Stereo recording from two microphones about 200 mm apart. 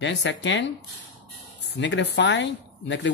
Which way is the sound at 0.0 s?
60° left (ahead or behind).